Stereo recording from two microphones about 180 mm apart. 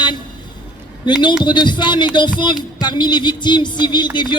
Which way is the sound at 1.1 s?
25° left (ahead or behind).